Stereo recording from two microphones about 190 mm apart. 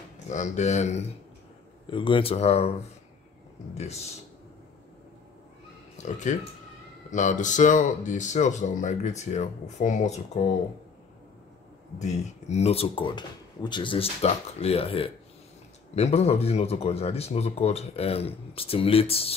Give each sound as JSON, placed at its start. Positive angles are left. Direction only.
{"t": 0.3, "sound": "speech", "side_deg": 40}
{"t": 1.9, "sound": "speech", "side_deg": 25}
{"t": 3.7, "sound": "speech", "side_deg": 35}
{"t": 6.0, "sound": "speech", "side_deg": 40}
{"t": 12.0, "sound": "speech", "side_deg": 35}